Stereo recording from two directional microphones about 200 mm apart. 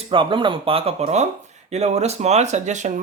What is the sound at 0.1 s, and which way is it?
Speech, 25° right (ahead or behind).